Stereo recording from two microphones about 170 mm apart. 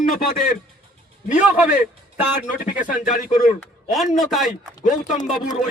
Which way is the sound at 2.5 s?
55° left (ahead or behind).